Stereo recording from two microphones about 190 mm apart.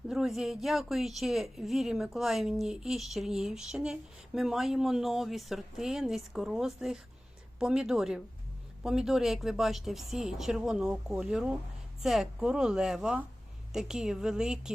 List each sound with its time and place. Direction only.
0.1 s a woman's voice: centre (ahead or behind)